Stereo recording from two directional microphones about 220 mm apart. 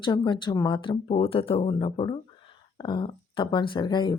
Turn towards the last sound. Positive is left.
turn(degrees=20)  # may be behind; listen again after turning